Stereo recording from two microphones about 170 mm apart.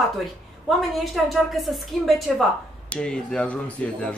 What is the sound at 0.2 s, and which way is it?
A woman's voice, centre (ahead or behind).